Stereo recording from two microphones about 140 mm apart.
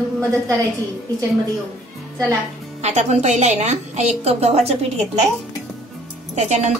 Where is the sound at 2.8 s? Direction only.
55° right (ahead or behind).